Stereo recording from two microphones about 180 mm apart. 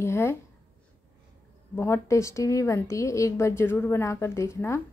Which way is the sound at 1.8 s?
15° left (ahead or behind).